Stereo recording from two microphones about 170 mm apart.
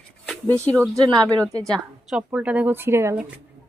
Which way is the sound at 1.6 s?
Centre (ahead or behind).